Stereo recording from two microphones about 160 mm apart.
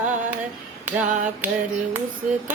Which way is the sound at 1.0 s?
55° right (ahead or behind).